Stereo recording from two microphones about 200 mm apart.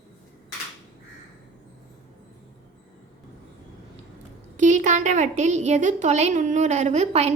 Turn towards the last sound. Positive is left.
turn(degrees=-30)  # may be behind; listen again after turning